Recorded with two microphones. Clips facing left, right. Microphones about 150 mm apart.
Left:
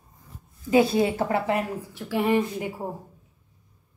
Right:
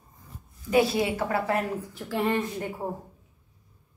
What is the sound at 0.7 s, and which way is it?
Speech, 30° left (ahead or behind).